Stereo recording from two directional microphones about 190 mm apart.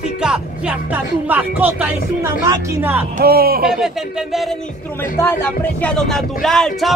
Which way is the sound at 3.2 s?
55° right (ahead or behind).